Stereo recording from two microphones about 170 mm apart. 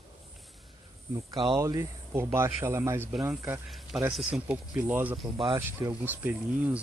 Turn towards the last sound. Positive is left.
turn(degrees=-10)  # may be behind; listen again after turning